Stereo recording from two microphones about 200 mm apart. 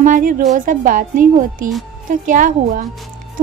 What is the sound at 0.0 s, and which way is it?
A woman's voice, 40° right (ahead or behind).